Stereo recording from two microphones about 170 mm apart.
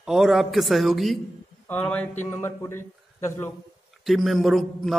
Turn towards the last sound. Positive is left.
turn(degrees=0)  # may be behind; listen again after turning